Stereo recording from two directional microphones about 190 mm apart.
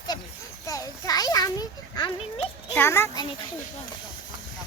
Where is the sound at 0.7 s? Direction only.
20° left (ahead or behind).